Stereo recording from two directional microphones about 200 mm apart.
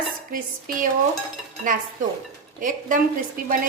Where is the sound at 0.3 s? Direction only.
45° right (ahead or behind).